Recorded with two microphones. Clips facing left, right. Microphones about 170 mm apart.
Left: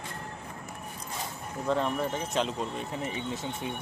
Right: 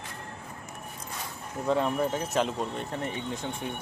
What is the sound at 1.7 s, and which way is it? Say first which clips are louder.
Speech: right 2 dB; 5° right (ahead or behind).